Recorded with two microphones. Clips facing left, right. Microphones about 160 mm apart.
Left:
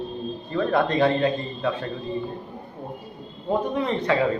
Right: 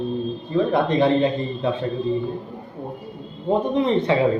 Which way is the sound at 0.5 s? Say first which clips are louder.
Right 3 dB; 20° right (ahead or behind).